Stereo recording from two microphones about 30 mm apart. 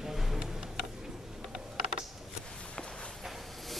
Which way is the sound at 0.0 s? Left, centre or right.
Centre.